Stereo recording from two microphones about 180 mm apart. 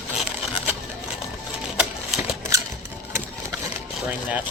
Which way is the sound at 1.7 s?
5° right (ahead or behind).